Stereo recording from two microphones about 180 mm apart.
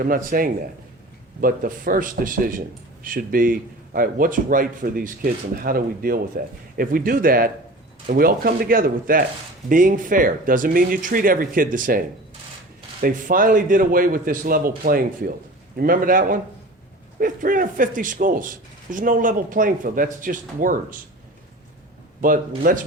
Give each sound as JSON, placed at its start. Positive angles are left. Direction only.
{"t": 0.0, "sound": "a man's voice", "side_deg": -50}
{"t": 15.7, "sound": "a man's voice", "side_deg": -50}
{"t": 22.2, "sound": "a man's voice", "side_deg": -50}